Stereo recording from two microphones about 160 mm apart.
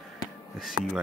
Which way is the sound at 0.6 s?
Centre (ahead or behind).